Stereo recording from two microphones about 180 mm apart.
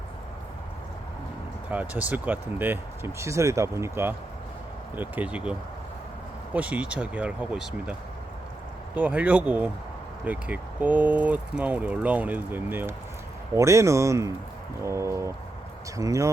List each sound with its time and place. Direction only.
1.7 s speech: 10° right (ahead or behind)
9.0 s speech: 10° right (ahead or behind)